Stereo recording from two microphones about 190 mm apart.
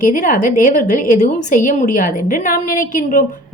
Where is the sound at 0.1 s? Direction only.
45° left (ahead or behind).